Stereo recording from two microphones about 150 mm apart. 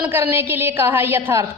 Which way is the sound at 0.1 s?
15° right (ahead or behind).